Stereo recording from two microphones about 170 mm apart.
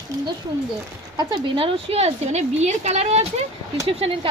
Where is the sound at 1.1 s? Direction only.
30° right (ahead or behind).